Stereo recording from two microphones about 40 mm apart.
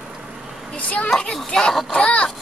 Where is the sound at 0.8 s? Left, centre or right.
Left.